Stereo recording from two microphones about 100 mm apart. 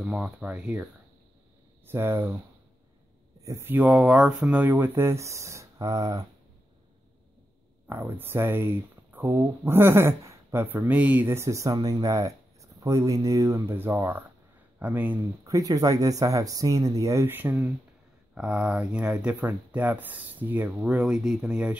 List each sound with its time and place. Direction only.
0.0 s speech: 5° right (ahead or behind)
1.9 s speech: 25° right (ahead or behind)
3.3 s speech: 30° right (ahead or behind)
7.9 s speech: 20° right (ahead or behind)
11.2 s speech: 25° right (ahead or behind)
15.4 s speech: 35° right (ahead or behind); by 17.6 s 20° right (ahead or behind)
18.3 s speech: 10° right (ahead or behind)